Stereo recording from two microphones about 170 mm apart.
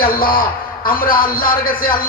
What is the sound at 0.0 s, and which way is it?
A man's voice, 60° left (ahead or behind).